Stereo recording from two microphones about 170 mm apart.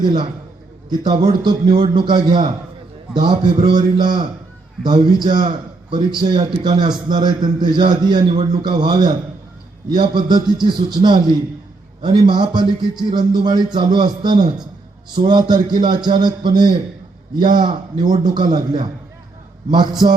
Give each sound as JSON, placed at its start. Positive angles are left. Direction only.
{"t": 0.0, "sound": "a man's voice", "side_deg": -25}